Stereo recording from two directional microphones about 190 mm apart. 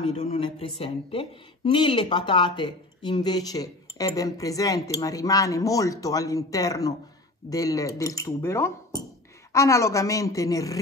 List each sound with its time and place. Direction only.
0.4 s a woman's voice: 30° left (ahead or behind)